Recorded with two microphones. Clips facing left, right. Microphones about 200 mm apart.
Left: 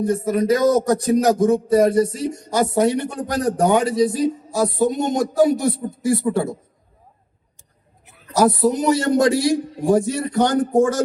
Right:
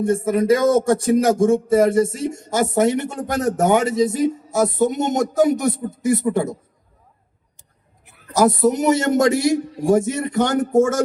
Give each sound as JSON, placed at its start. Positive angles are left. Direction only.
{"t": 0.0, "sound": "speech", "side_deg": -25}
{"t": 8.5, "sound": "speech", "side_deg": -20}